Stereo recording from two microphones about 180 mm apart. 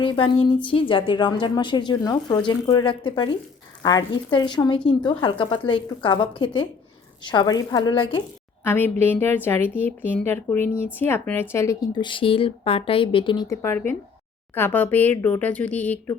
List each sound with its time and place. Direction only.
0.0 s a woman's voice: 30° left (ahead or behind)
8.6 s a woman's voice: 10° left (ahead or behind)